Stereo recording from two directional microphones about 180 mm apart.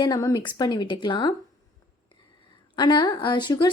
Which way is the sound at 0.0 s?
20° left (ahead or behind).